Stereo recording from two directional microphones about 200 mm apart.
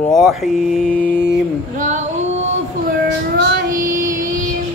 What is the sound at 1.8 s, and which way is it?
Female singing, 35° right (ahead or behind).